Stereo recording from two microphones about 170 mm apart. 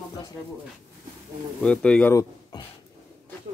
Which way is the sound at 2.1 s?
20° left (ahead or behind).